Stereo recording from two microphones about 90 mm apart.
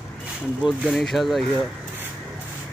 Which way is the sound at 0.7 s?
Centre (ahead or behind).